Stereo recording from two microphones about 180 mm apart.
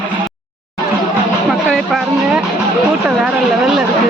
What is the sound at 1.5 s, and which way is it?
Music, centre (ahead or behind).